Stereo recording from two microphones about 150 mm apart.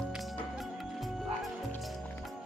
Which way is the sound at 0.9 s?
Centre (ahead or behind).